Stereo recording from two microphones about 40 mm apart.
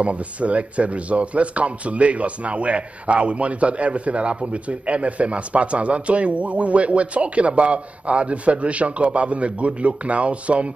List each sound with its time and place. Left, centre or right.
0.0 s a man's voice: right